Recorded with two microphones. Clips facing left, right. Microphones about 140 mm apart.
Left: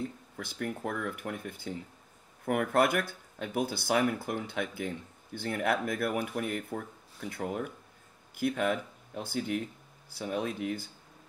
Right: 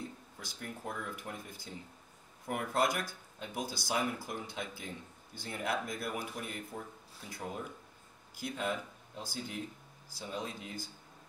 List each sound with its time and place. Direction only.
0.4 s speech: 60° left (ahead or behind)